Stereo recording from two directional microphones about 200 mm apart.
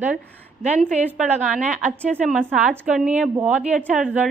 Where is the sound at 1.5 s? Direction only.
40° right (ahead or behind).